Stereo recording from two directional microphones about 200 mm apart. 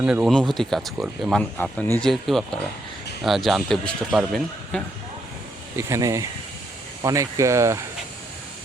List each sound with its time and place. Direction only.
0.0 s speech: 5° right (ahead or behind)
5.7 s speech: 15° right (ahead or behind)